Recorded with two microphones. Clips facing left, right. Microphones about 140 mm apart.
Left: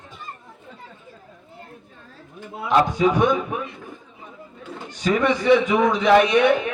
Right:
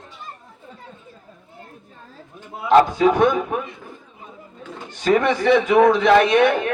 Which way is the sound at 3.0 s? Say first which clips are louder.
Right 2 dB; 55° right (ahead or behind).